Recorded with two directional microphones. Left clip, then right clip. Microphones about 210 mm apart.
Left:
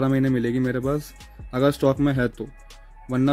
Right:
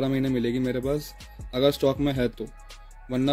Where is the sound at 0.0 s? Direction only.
45° left (ahead or behind).